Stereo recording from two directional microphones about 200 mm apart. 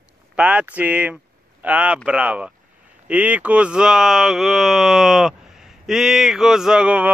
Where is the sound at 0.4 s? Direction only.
5° right (ahead or behind).